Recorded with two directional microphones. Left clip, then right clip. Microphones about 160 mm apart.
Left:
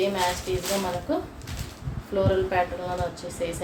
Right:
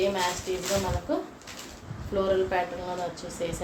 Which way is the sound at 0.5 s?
10° right (ahead or behind).